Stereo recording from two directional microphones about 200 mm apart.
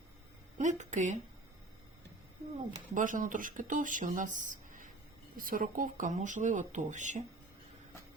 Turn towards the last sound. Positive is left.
turn(degrees=-40)  # may be behind; listen again after turning